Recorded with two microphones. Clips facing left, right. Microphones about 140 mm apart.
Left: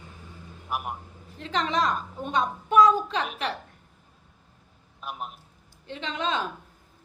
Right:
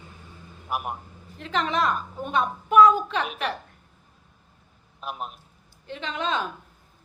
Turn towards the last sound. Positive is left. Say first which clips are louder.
# right 1 dB
turn(degrees=30)  # may be behind; listen again after turning